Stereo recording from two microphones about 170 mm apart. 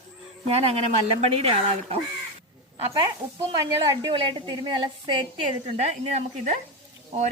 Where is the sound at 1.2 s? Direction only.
35° right (ahead or behind).